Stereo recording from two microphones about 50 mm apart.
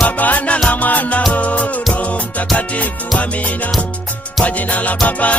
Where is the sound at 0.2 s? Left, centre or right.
Left.